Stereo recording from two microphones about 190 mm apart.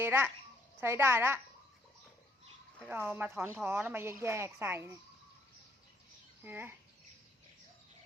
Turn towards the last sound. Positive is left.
turn(degrees=-10)  # may be behind; listen again after turning